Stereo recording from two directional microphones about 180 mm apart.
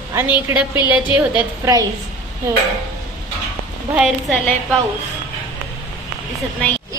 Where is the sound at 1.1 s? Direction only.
10° right (ahead or behind).